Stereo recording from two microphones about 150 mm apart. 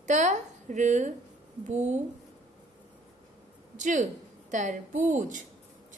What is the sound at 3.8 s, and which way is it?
A woman's voice, 55° right (ahead or behind).